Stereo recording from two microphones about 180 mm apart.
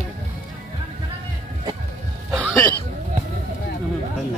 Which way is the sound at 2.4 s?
10° left (ahead or behind).